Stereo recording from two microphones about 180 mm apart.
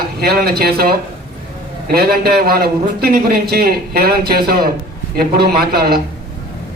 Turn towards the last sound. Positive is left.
turn(degrees=-60)  # may be behind; listen again after turning